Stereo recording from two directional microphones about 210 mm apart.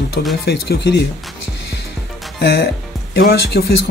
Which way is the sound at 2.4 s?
50° left (ahead or behind).